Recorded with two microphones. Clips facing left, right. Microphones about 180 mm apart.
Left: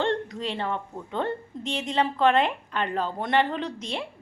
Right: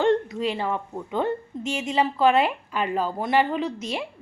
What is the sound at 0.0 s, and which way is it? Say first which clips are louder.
A woman's voice: right 5 dB; 10° right (ahead or behind).